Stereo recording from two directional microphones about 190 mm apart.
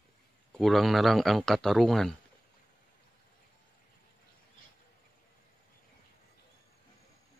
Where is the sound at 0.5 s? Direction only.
Centre (ahead or behind).